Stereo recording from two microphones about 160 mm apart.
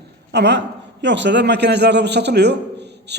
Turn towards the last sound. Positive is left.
turn(degrees=-90)